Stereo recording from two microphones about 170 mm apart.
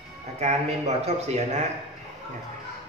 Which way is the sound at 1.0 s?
40° right (ahead or behind).